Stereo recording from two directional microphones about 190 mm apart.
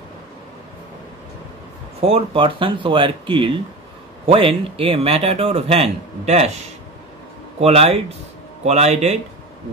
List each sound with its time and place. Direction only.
2.0 s speech: 30° right (ahead or behind)
7.6 s speech: 30° right (ahead or behind)